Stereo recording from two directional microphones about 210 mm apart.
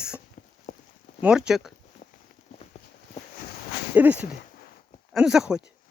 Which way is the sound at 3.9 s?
5° right (ahead or behind).